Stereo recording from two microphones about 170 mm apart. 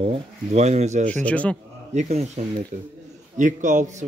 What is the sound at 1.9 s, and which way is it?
Speech, 45° right (ahead or behind).